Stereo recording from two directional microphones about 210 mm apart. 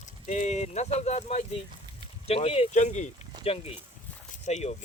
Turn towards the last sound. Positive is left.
turn(degrees=35)  # may be behind; listen again after turning